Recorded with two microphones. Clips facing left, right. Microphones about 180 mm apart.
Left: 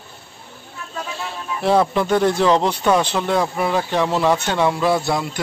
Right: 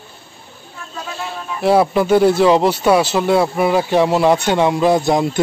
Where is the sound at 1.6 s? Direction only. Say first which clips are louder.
Right 3 dB; 5° right (ahead or behind).